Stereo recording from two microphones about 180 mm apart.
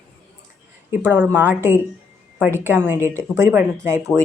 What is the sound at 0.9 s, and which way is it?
Speech, 10° right (ahead or behind).